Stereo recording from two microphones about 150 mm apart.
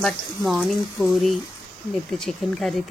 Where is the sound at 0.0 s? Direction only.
Centre (ahead or behind).